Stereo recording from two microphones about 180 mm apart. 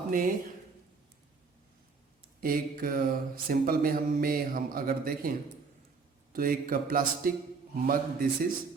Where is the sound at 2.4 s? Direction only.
55° right (ahead or behind).